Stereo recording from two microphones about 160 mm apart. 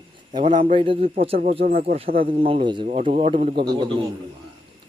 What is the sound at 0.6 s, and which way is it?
Speech, 35° right (ahead or behind).